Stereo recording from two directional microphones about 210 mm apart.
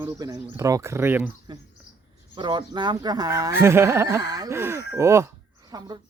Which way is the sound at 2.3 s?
20° right (ahead or behind).